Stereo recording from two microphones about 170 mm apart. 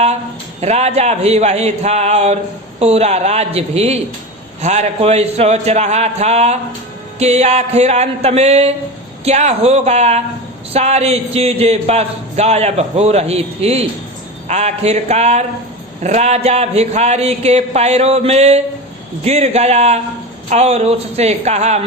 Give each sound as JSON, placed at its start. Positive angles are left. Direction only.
{"t": 0.6, "sound": "a man's voice", "side_deg": -40}